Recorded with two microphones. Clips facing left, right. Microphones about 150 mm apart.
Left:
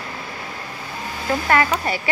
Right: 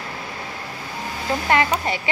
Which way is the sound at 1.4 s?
20° right (ahead or behind).